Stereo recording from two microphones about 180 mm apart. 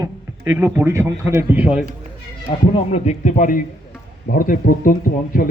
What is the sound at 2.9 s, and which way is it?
A man's voice, 40° left (ahead or behind).